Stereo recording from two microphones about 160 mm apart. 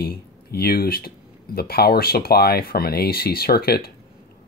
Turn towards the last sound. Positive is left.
turn(degrees=70)  # may be behind; listen again after turning